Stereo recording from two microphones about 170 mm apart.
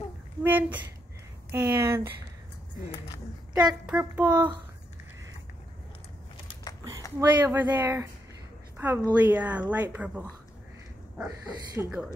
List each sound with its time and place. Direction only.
0.4 s speech: 10° right (ahead or behind)
3.8 s speech: 10° right (ahead or behind)
7.2 s a woman's voice: 15° right (ahead or behind)
11.2 s speech: 20° right (ahead or behind)